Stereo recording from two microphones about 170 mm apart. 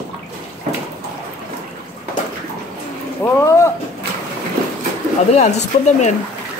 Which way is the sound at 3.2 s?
15° left (ahead or behind).